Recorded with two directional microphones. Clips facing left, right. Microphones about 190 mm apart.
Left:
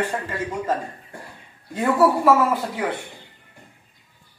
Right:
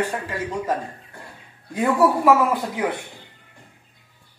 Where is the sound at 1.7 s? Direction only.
15° right (ahead or behind).